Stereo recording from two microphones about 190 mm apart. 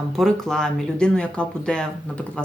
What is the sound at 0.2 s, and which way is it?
Speech, 5° left (ahead or behind).